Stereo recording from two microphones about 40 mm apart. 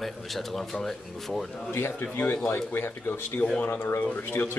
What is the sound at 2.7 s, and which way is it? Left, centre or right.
Speech, left.